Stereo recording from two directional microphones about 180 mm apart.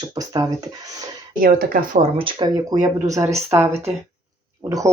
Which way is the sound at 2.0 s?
30° right (ahead or behind).